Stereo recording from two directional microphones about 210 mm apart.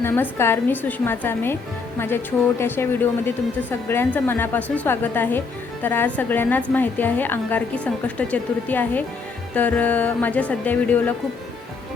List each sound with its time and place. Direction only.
0.0 s a woman's voice: 10° left (ahead or behind)